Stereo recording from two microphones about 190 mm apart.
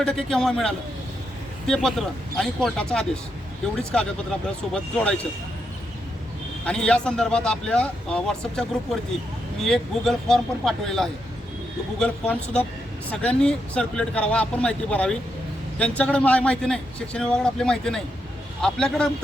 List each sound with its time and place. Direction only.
0.0 s a man's voice: 5° left (ahead or behind)
6.7 s a man's voice: 5° left (ahead or behind)
9.6 s a man's voice: centre (ahead or behind)